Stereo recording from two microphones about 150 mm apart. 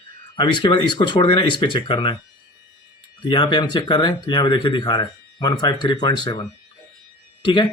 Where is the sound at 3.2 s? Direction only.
30° left (ahead or behind).